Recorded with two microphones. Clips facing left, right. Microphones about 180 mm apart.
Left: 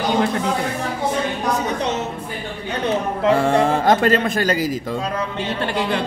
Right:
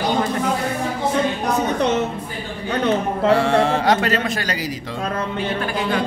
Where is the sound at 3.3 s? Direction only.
50° left (ahead or behind).